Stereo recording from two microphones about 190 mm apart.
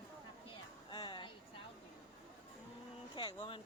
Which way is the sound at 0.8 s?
25° left (ahead or behind).